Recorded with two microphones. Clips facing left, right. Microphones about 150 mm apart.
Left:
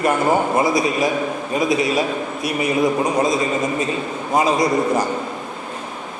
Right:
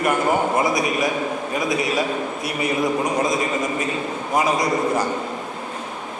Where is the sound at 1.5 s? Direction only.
25° left (ahead or behind).